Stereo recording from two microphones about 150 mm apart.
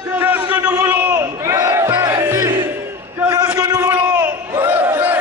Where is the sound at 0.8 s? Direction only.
10° right (ahead or behind).